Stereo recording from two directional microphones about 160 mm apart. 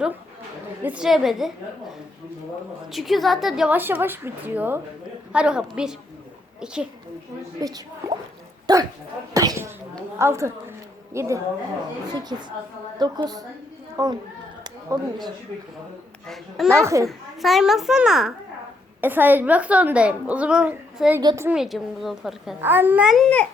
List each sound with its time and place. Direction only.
0.8 s a child's voice: 10° right (ahead or behind)
2.9 s a woman's voice: centre (ahead or behind)
7.6 s speech: 25° right (ahead or behind)
9.3 s a sound: 20° right (ahead or behind)
10.2 s a woman's voice: 15° right (ahead or behind)
14.6 s a sound: 25° right (ahead or behind)
16.2 s a child's voice: centre (ahead or behind)
16.8 s a woman's voice: 20° right (ahead or behind)
17.1 s a child's voice: centre (ahead or behind)
21.2 s a woman's voice: 25° right (ahead or behind)
21.4 s a child's voice: 5° right (ahead or behind)
22.6 s a child's voice: 15° right (ahead or behind); by 23.5 s 5° left (ahead or behind)